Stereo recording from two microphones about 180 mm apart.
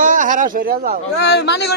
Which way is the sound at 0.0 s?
45° right (ahead or behind).